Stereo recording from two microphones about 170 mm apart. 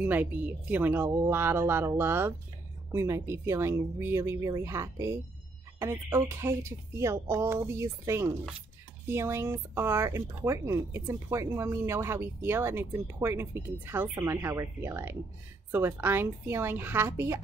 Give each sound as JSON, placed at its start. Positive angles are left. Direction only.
{"t": 0.0, "sound": "speech", "side_deg": -10}